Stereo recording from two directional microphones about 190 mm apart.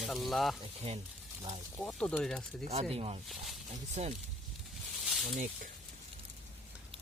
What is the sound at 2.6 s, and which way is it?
Speech, 35° right (ahead or behind).